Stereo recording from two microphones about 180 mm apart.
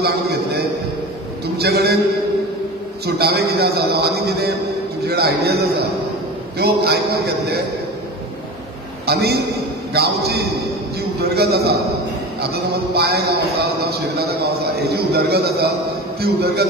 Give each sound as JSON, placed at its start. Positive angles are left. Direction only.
{"t": 0.0, "sound": "a sound", "side_deg": -60}
{"t": 1.6, "sound": "a man's voice", "side_deg": -65}
{"t": 3.2, "sound": "a man's voice", "side_deg": -60}
{"t": 9.0, "sound": "a man's voice", "side_deg": -65}